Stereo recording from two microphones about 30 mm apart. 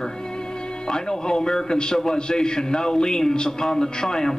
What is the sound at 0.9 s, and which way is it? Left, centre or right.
A man's voice, left.